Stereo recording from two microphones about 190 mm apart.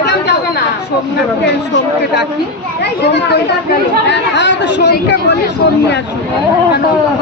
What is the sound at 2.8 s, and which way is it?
Speech, 60° left (ahead or behind).